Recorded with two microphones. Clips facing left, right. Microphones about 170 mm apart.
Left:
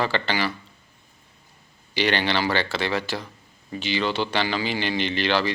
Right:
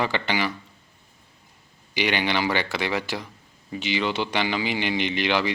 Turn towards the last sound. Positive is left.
turn(degrees=-15)  # may be behind; listen again after turning